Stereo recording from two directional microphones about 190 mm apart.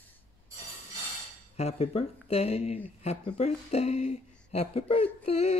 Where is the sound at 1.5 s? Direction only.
35° left (ahead or behind).